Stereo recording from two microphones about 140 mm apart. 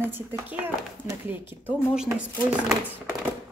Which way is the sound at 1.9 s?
5° right (ahead or behind).